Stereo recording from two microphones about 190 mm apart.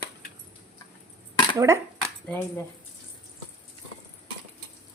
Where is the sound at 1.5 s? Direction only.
15° right (ahead or behind).